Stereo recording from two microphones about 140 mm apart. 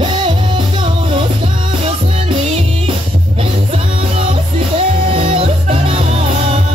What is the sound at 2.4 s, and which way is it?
Music, 45° right (ahead or behind).